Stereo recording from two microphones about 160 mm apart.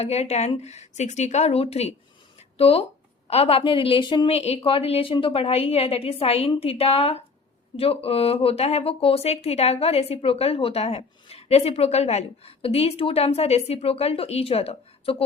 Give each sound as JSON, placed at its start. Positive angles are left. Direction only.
{"t": 0.0, "sound": "speech", "side_deg": 40}